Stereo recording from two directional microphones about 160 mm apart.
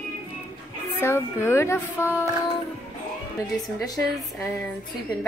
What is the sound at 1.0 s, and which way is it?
A woman's voice, 15° left (ahead or behind).